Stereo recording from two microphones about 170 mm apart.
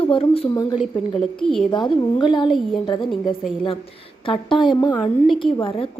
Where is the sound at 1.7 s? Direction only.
25° left (ahead or behind).